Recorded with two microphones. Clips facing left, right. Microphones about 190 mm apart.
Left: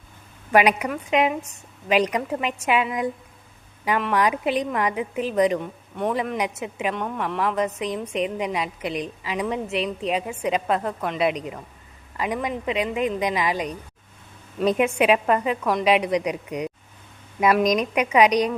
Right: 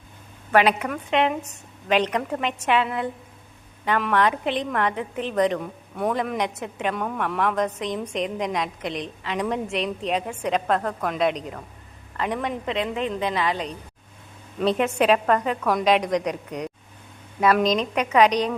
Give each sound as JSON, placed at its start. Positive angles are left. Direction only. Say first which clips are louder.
{"t": 0.5, "sound": "a woman's voice", "louder": "left 1 dB", "side_deg": 15}